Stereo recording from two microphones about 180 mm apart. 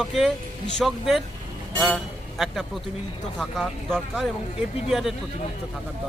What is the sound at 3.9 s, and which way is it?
Speech, 5° right (ahead or behind).